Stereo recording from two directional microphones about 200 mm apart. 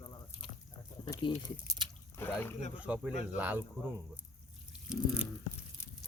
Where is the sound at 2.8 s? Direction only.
5° right (ahead or behind).